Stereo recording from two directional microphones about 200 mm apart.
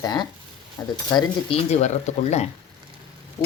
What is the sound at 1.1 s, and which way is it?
Speech, 30° left (ahead or behind).